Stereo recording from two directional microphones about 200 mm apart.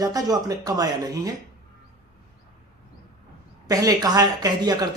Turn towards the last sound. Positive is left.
turn(degrees=-20)  # may be behind; listen again after turning